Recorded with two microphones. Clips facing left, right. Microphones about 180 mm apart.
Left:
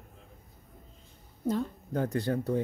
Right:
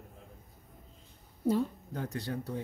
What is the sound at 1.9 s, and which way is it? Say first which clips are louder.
Speech: left 8 dB; 55° left (ahead or behind).